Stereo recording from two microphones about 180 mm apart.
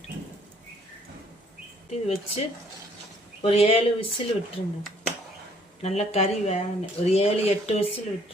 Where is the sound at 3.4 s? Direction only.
35° left (ahead or behind).